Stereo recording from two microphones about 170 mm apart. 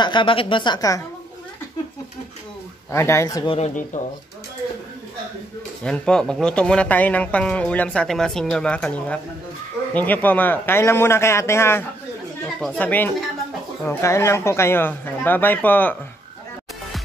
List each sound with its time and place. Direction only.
0.0 s a woman's voice: 30° left (ahead or behind)
2.9 s speech: 15° left (ahead or behind)
3.4 s speech: 40° left (ahead or behind)
5.9 s speech: 5° left (ahead or behind)